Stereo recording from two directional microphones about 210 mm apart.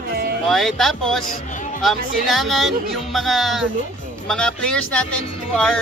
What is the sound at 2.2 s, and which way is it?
A man's voice, centre (ahead or behind).